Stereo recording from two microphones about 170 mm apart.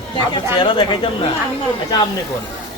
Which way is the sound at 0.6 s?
30° left (ahead or behind).